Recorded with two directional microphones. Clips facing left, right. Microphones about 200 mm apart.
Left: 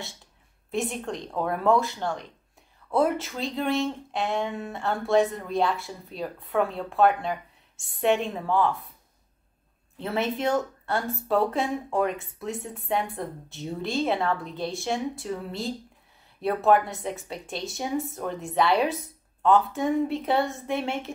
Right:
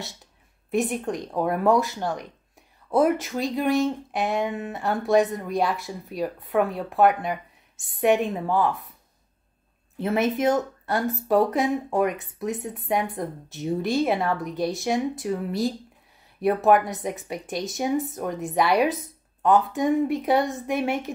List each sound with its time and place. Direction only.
0.7 s speech: 15° right (ahead or behind)
9.9 s speech: 15° right (ahead or behind)